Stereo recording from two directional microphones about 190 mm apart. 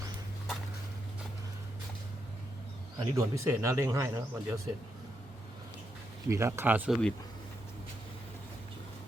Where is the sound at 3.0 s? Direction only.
15° right (ahead or behind).